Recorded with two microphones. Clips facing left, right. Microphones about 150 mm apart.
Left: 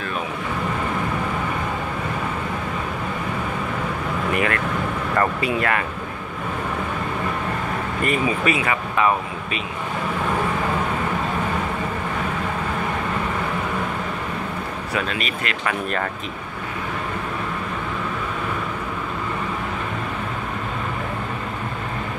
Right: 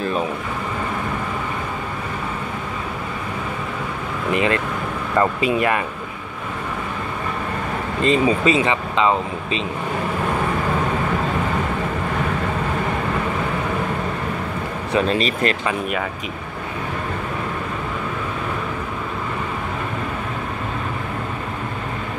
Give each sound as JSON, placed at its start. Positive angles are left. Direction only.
{"t": 4.3, "sound": "vehicle", "side_deg": -20}
{"t": 5.2, "sound": "speech", "side_deg": -20}
{"t": 8.0, "sound": "speech", "side_deg": -25}
{"t": 14.9, "sound": "speech", "side_deg": -30}